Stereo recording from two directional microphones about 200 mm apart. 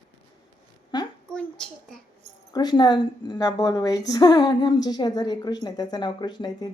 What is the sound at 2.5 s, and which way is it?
A woman's voice, 20° left (ahead or behind).